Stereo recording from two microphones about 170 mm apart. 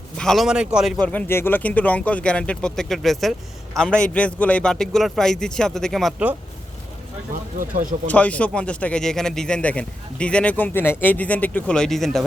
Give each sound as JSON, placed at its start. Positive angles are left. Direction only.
{"t": 0.2, "sound": "a man's voice", "side_deg": 0}
{"t": 7.6, "sound": "speech", "side_deg": -55}
{"t": 8.0, "sound": "speech", "side_deg": 10}